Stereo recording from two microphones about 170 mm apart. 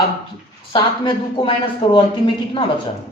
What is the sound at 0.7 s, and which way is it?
A man's voice, 30° left (ahead or behind).